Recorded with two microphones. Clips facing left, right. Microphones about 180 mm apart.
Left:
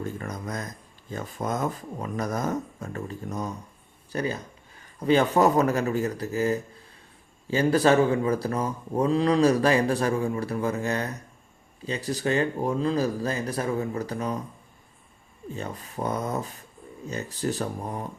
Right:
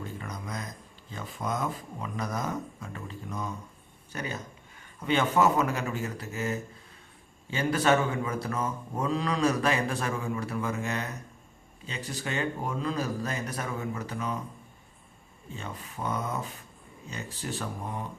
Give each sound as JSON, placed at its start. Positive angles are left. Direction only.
{"t": 0.0, "sound": "a man's voice", "side_deg": 45}
{"t": 15.5, "sound": "speech", "side_deg": 40}